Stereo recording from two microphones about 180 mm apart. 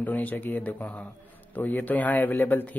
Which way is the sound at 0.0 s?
10° left (ahead or behind).